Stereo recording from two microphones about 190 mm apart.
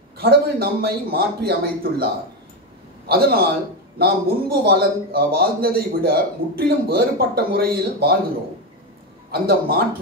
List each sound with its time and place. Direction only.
0.2 s a man's voice: 55° right (ahead or behind)
3.1 s a man's voice: 55° right (ahead or behind)
9.3 s a man's voice: 55° right (ahead or behind)